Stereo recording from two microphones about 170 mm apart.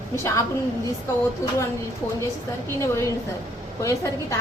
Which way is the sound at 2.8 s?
15° left (ahead or behind).